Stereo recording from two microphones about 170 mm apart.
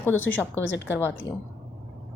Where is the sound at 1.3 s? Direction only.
15° left (ahead or behind).